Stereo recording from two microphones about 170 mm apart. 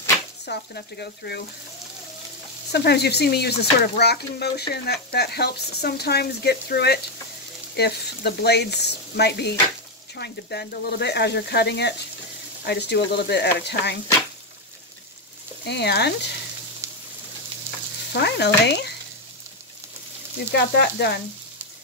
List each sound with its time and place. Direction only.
0.5 s speech: 75° left (ahead or behind)
2.7 s speech: 75° left (ahead or behind)
13.6 s stir: 80° left
15.6 s speech: 80° left
18.1 s speech: 75° left (ahead or behind)
18.7 s frying: 85° left
20.5 s speech: 75° left (ahead or behind)